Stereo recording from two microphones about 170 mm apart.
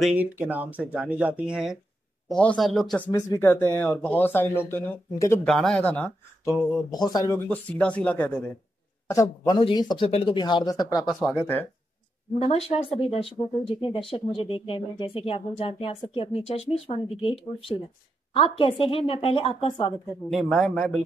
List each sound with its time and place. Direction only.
0.0 s speech: 10° right (ahead or behind)
3.1 s speech: 20° left (ahead or behind)
5.5 s speech: 5° left (ahead or behind)
6.9 s speech: 25° left (ahead or behind)
7.4 s speech: 5° left (ahead or behind)
9.0 s a man's voice: 20° left (ahead or behind)
11.3 s speech: 10° left (ahead or behind)
12.4 s speech: 35° left (ahead or behind)
20.2 s speech: centre (ahead or behind)